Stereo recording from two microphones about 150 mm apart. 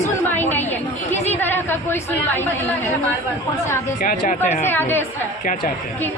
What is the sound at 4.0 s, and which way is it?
Speech, 55° left (ahead or behind).